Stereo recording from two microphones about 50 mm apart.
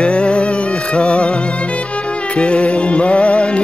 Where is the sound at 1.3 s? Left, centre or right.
Left.